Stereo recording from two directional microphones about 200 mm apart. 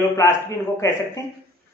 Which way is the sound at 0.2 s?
15° left (ahead or behind).